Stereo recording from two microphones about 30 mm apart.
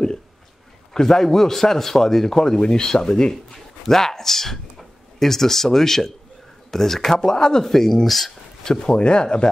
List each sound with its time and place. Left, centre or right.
0.9 s a man's voice: centre
3.5 s a man's voice: centre
7.6 s a man's voice: centre
8.6 s speech: left